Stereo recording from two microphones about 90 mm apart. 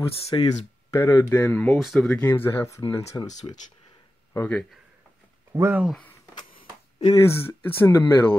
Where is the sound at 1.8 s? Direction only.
Centre (ahead or behind).